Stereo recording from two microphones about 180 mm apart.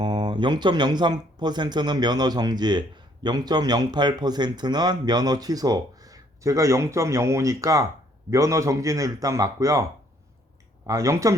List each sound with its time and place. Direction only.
0.0 s a man's voice: 25° right (ahead or behind)
10.8 s a man's voice: 20° right (ahead or behind)